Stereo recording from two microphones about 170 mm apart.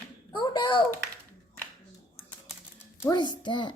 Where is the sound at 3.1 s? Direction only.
25° left (ahead or behind).